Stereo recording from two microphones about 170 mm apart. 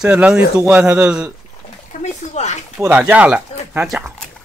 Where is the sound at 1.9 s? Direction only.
45° left (ahead or behind).